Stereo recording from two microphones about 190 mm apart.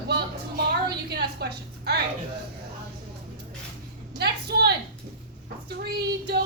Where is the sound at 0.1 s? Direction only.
60° right (ahead or behind).